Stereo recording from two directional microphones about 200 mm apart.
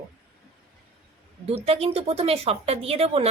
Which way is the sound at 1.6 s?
30° right (ahead or behind).